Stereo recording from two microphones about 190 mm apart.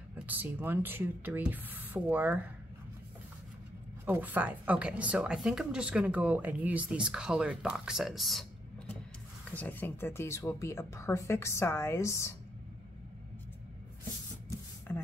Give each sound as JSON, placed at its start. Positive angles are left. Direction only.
{"t": 0.1, "sound": "speech", "side_deg": -10}
{"t": 4.0, "sound": "speech", "side_deg": -10}
{"t": 14.9, "sound": "speech", "side_deg": 10}